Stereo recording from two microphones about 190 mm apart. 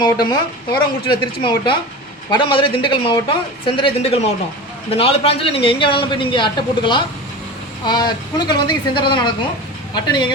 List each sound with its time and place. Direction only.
0.0 s a man's voice: 20° left (ahead or behind)